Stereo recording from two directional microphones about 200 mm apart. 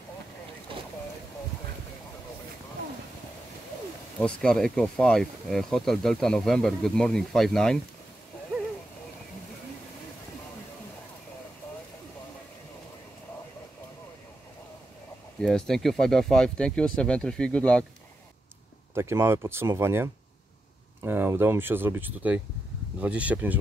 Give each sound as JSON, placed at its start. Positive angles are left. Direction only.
{"t": 0.7, "sound": "boat", "side_deg": -25}
{"t": 4.2, "sound": "speech", "side_deg": 5}
{"t": 15.4, "sound": "speech", "side_deg": 5}
{"t": 18.9, "sound": "speech", "side_deg": -15}